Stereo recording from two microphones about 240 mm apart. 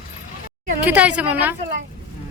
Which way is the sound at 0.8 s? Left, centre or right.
Centre.